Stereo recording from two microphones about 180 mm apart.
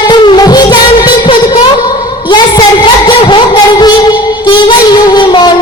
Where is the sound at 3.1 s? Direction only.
25° left (ahead or behind).